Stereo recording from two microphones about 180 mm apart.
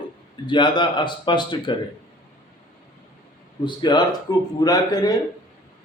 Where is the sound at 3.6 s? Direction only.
25° left (ahead or behind).